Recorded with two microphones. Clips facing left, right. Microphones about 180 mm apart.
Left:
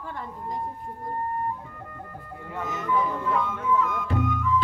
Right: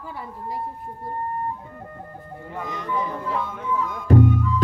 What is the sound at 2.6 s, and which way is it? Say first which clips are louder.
Speech: left 2 dB; 5° left (ahead or behind).